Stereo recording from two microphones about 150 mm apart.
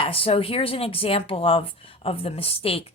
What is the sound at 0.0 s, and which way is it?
Speech, 40° left (ahead or behind).